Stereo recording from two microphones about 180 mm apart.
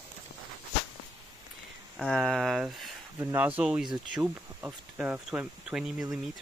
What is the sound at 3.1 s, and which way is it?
Speech, 15° right (ahead or behind).